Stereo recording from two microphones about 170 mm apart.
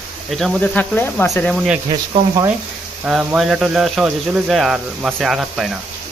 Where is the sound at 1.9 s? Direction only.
20° right (ahead or behind).